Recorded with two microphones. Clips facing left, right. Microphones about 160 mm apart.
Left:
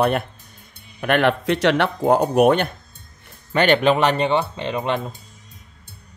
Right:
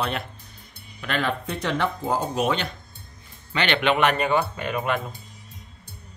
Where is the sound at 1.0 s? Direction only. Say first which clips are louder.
Left 8 dB; 65° left (ahead or behind).